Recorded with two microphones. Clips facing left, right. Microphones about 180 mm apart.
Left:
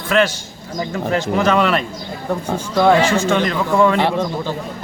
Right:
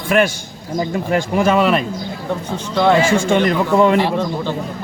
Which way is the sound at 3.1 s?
10° right (ahead or behind).